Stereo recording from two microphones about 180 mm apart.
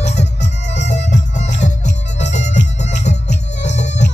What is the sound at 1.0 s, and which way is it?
Music, 40° left (ahead or behind).